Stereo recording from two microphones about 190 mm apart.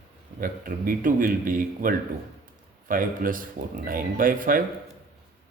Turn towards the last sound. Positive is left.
turn(degrees=-45)  # may be behind; listen again after turning